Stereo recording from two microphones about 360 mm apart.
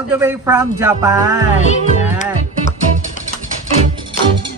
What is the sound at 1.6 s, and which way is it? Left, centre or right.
Speech, centre.